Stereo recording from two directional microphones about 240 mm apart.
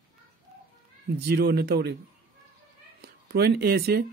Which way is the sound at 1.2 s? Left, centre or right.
Right.